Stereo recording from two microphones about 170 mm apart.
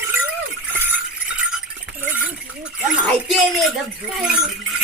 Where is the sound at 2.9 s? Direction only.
Centre (ahead or behind).